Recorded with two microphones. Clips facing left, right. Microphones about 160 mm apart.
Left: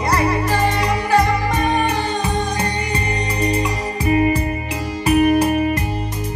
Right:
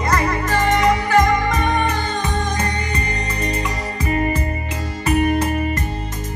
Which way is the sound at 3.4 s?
10° left (ahead or behind).